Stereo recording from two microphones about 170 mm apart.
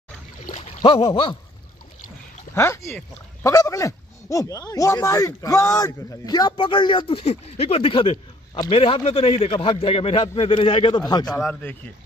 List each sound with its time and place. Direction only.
0.5 s rowboat: 40° left (ahead or behind)
2.5 s speech: 15° left (ahead or behind)